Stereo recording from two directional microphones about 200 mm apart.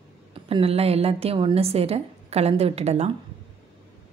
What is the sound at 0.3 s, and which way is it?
A woman's voice, 30° right (ahead or behind).